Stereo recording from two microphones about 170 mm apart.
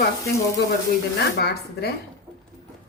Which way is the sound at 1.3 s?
70° left (ahead or behind).